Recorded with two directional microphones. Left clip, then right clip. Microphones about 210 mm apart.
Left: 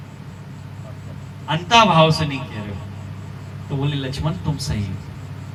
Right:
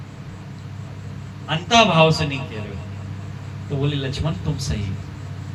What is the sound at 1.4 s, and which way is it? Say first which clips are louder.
Speech: left 2 dB; 20° left (ahead or behind).